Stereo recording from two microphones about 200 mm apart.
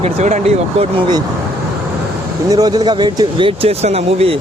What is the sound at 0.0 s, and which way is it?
Speech, 35° right (ahead or behind).